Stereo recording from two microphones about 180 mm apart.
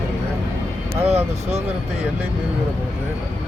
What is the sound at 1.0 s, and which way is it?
Speech, 35° right (ahead or behind).